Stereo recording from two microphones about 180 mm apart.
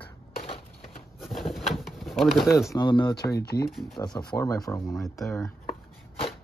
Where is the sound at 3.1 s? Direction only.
65° left (ahead or behind).